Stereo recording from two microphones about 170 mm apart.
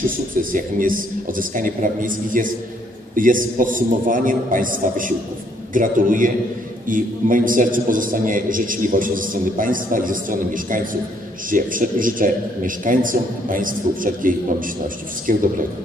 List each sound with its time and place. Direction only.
0.4 s a man's voice: 55° right (ahead or behind)